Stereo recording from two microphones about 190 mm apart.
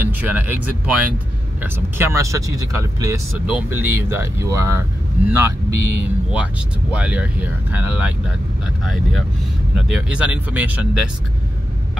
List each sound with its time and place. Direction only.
0.0 s speech: 10° right (ahead or behind)